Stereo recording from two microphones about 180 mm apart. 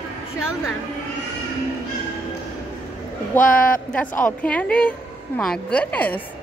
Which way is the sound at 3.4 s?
50° left (ahead or behind).